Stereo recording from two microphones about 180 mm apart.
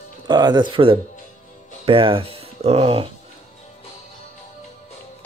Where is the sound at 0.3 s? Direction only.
25° right (ahead or behind).